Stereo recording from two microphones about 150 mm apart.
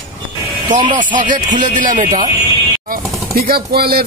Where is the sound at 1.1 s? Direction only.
60° right (ahead or behind).